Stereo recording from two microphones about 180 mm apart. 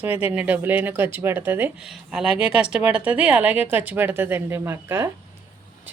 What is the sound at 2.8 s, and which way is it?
Speech, 10° right (ahead or behind).